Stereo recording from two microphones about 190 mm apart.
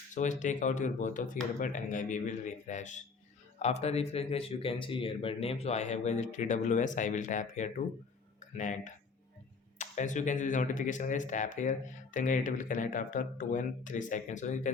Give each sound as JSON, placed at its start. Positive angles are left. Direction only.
{"t": 0.1, "sound": "speech", "side_deg": 40}